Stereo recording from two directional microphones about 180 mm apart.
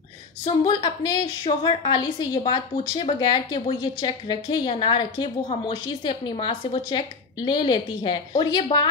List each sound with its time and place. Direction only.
0.5 s a woman's voice: 25° left (ahead or behind)